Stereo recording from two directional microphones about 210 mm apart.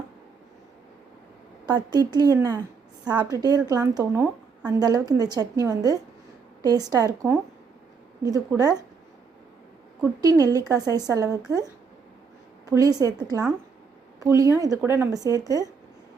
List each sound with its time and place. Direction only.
1.9 s a woman's voice: 20° right (ahead or behind)
10.0 s a woman's voice: 15° right (ahead or behind)